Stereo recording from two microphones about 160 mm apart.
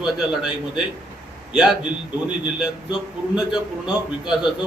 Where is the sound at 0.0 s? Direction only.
5° right (ahead or behind).